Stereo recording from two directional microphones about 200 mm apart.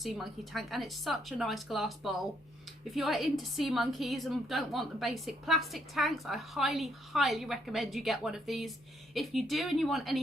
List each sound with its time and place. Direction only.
0.0 s a woman's voice: centre (ahead or behind)